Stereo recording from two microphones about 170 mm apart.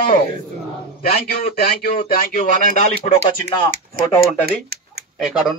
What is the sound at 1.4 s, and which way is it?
Speech, 60° left (ahead or behind).